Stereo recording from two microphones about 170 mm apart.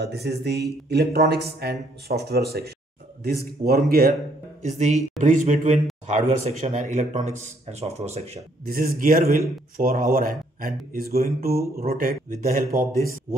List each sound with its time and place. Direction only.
0.0 s speech: 75° right (ahead or behind)
4.6 s speech: 45° right (ahead or behind)
8.6 s a man's voice: 60° right (ahead or behind)